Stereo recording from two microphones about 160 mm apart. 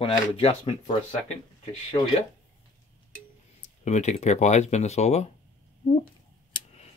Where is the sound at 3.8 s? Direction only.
45° left (ahead or behind).